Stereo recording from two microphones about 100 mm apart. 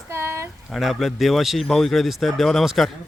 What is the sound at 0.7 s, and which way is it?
Speech, centre (ahead or behind).